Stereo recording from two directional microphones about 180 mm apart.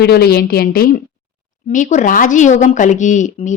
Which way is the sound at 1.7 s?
45° left (ahead or behind).